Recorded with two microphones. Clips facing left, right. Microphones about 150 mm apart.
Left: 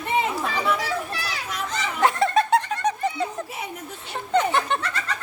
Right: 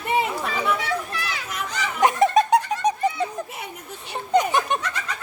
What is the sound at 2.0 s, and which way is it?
Laughter, 20° right (ahead or behind).